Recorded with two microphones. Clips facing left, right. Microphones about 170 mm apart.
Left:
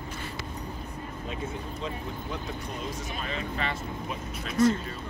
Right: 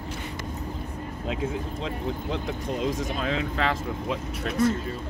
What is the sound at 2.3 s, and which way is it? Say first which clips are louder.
Speech: right 6 dB; 90° right.